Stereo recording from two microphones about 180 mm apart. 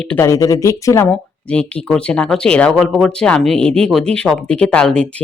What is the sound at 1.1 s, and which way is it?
Speech, 5° left (ahead or behind).